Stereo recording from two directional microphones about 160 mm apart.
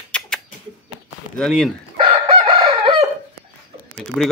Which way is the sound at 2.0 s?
30° right (ahead or behind).